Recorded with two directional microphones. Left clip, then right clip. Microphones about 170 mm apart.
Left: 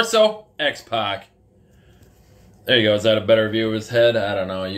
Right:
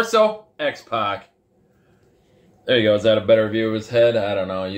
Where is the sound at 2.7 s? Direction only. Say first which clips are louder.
Even; 15° right (ahead or behind).